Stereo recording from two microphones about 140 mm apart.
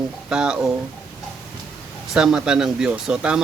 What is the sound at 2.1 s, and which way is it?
Speech, 5° right (ahead or behind).